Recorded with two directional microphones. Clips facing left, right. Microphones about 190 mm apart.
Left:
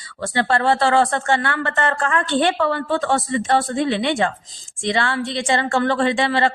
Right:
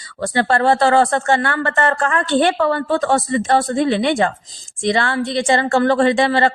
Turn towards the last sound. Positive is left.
turn(degrees=-40)  # may be behind; listen again after turning